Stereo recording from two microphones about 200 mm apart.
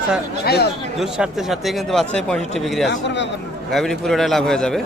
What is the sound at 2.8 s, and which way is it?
Speech, 60° left (ahead or behind).